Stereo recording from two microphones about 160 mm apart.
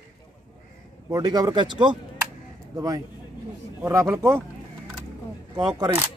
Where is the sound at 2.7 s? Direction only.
25° right (ahead or behind).